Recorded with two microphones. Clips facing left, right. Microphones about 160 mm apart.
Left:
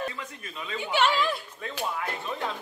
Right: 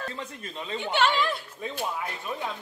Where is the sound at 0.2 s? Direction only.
30° right (ahead or behind).